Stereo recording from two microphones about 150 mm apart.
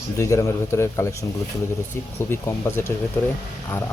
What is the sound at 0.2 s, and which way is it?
Speech, 20° left (ahead or behind).